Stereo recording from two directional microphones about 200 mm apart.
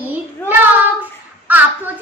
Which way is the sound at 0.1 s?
10° right (ahead or behind).